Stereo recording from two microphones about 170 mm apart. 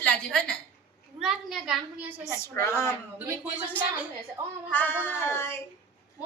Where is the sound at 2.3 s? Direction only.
15° left (ahead or behind).